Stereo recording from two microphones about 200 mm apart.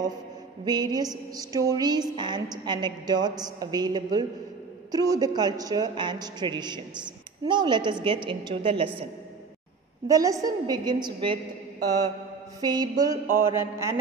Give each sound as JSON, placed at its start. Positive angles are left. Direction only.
{"t": 0.7, "sound": "a woman's voice", "side_deg": -20}
{"t": 10.0, "sound": "mantra", "side_deg": -15}
{"t": 10.7, "sound": "a woman's voice", "side_deg": -20}
{"t": 12.5, "sound": "mantra", "side_deg": -20}